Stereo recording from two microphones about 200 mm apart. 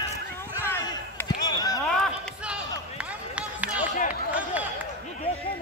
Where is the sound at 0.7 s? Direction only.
15° left (ahead or behind).